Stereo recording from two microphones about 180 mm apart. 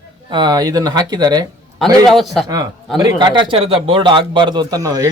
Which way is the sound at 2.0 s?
Centre (ahead or behind).